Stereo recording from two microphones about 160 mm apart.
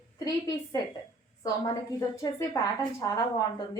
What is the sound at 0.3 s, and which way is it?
Speech, 20° left (ahead or behind).